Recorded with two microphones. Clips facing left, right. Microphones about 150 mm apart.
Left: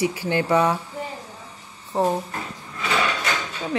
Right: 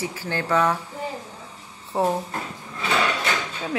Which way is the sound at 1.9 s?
5° right (ahead or behind).